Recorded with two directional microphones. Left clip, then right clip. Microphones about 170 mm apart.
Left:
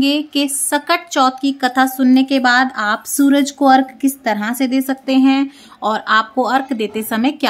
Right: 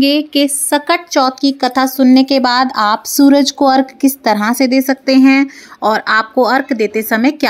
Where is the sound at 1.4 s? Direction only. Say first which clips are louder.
Right 2 dB; 30° right (ahead or behind).